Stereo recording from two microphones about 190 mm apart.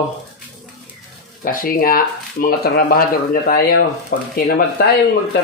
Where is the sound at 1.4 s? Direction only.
50° left (ahead or behind).